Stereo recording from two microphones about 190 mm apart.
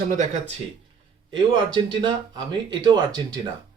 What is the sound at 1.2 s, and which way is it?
Speech, 25° right (ahead or behind).